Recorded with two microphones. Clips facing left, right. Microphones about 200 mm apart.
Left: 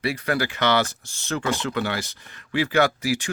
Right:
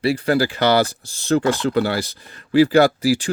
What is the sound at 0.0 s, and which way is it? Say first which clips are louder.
Speech: right 7 dB; 30° right (ahead or behind).